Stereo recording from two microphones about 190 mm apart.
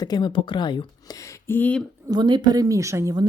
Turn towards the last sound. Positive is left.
turn(degrees=-15)  # may be behind; listen again after turning